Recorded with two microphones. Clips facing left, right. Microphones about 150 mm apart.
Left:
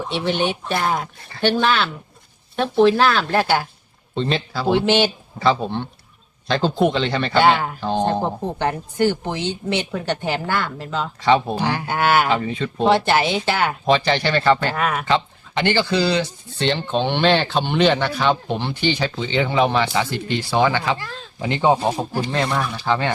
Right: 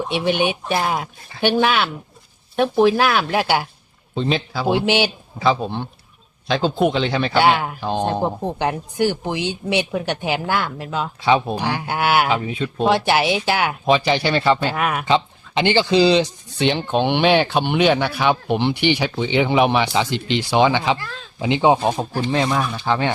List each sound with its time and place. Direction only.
0.1 s a man's voice: 15° right (ahead or behind)